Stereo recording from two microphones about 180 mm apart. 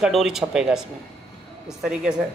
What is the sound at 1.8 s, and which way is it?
Speech, 5° right (ahead or behind).